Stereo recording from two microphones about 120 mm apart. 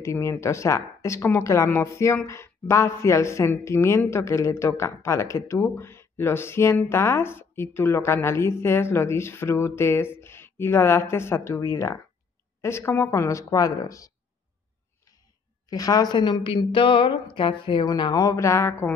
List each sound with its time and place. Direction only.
0.0 s a woman's voice: 25° left (ahead or behind)
15.7 s a woman's voice: 30° left (ahead or behind)